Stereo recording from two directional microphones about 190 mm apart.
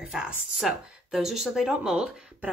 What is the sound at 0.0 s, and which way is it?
A woman's voice, 5° right (ahead or behind).